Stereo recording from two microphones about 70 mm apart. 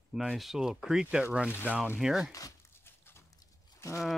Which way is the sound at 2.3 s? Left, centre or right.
Left.